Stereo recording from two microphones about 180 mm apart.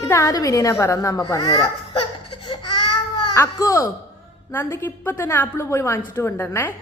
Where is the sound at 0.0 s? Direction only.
15° left (ahead or behind).